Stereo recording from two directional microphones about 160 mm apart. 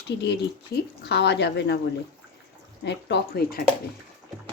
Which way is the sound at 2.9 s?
90° left.